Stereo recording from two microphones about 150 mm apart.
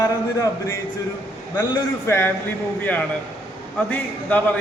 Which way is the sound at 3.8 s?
10° left (ahead or behind).